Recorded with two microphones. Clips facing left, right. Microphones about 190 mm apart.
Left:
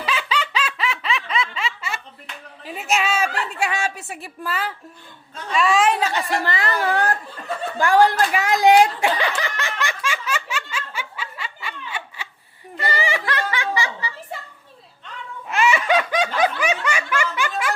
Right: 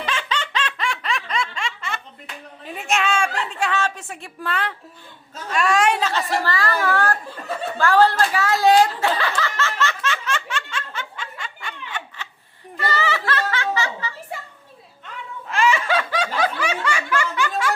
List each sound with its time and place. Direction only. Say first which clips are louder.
0.0 s snicker: left 2 dB; 10° left (ahead or behind)
2.6 s a sound: even; 5° left (ahead or behind)
5.5 s a woman's voice: left 1 dB; centre (ahead or behind)
6.4 s a woman's voice: even; 20° left (ahead or behind)
7.8 s a sound: left 1 dB; 15° left (ahead or behind)
15.4 s snicker: left 1 dB; 10° left (ahead or behind)